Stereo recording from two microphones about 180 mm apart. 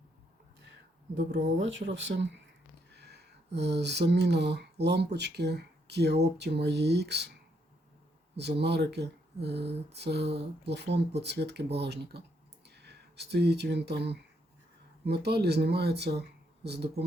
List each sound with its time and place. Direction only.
1.6 s speech: 90° right
2.9 s speech: 70° right (ahead or behind)
8.4 s speech: 70° right (ahead or behind)